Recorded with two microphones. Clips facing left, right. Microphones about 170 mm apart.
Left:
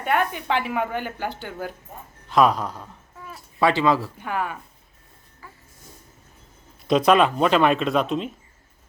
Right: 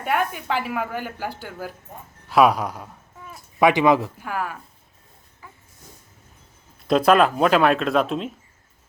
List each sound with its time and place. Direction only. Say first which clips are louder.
0.0 s a woman's voice: left 1 dB; 5° right (ahead or behind)
4.2 s a woman's voice: left 1 dB; centre (ahead or behind)
6.8 s a woman's voice: right 1 dB; centre (ahead or behind)